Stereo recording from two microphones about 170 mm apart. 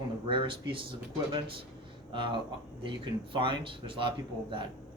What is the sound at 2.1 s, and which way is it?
Speech, 30° right (ahead or behind).